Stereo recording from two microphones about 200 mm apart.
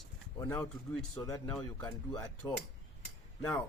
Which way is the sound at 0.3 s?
15° left (ahead or behind).